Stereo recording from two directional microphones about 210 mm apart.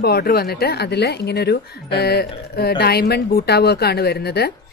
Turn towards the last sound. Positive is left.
turn(degrees=50)  # may be behind; listen again after turning